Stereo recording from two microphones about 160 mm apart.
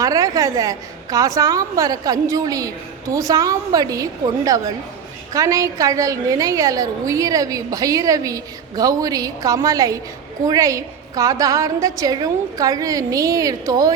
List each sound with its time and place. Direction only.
0.0 s a woman's voice: 20° right (ahead or behind)